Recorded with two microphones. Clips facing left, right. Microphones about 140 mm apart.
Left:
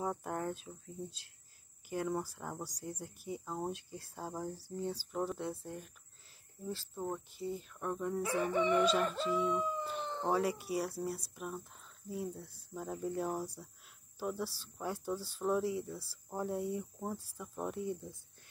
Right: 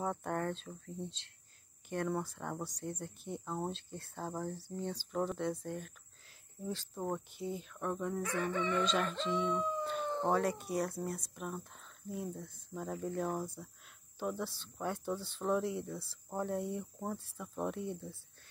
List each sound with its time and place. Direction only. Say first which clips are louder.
0.0 s speech: right 1 dB; 5° left (ahead or behind)
1.9 s speech: even; 5° left (ahead or behind)
8.2 s a sound: left 2 dB; 25° left (ahead or behind)
8.5 s speech: left 5 dB; 15° left (ahead or behind)
10.0 s howl: right 3 dB; 15° right (ahead or behind)
10.3 s speech: left 3 dB; 5° left (ahead or behind)